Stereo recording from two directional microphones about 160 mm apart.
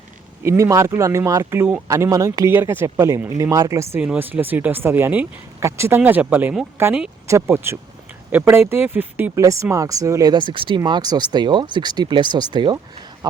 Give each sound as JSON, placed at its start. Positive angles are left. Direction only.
{"t": 0.4, "sound": "speech", "side_deg": -20}